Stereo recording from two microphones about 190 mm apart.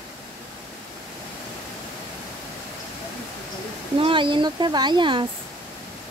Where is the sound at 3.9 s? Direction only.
25° right (ahead or behind).